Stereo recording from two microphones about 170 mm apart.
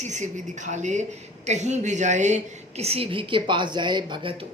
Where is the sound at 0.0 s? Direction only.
45° right (ahead or behind).